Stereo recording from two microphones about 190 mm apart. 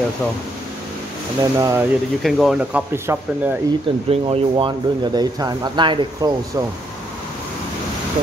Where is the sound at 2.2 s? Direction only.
Centre (ahead or behind).